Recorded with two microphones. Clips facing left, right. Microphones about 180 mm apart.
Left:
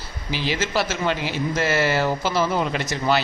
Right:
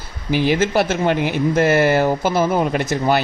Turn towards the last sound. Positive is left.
turn(degrees=-50)  # may be behind; listen again after turning